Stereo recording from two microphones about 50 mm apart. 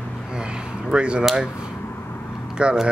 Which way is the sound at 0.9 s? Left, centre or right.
Right.